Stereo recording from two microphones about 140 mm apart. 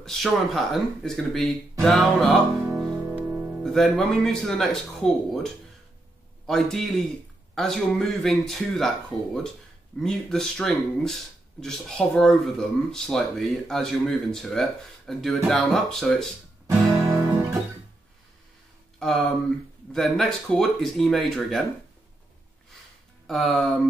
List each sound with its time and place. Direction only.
0.0 s speech: 5° left (ahead or behind)
2.7 s music: 20° right (ahead or behind)
3.6 s speech: centre (ahead or behind)
16.8 s guitar: 25° right (ahead or behind)
19.9 s speech: 5° left (ahead or behind)
23.2 s speech: centre (ahead or behind)